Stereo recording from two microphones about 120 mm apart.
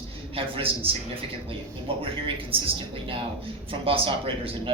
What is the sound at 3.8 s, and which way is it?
Speech, 50° right (ahead or behind).